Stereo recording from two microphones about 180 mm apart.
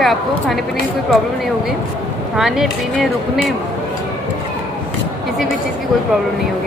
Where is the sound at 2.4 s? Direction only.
Centre (ahead or behind).